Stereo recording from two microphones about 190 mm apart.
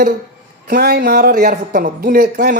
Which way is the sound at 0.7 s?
55° right (ahead or behind).